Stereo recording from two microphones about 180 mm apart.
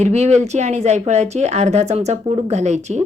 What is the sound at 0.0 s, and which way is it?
Speech, 35° right (ahead or behind).